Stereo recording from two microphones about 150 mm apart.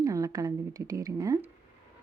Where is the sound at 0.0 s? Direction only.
20° right (ahead or behind).